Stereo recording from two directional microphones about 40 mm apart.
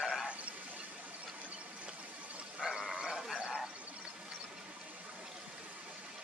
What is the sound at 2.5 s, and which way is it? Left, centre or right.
Frog, centre.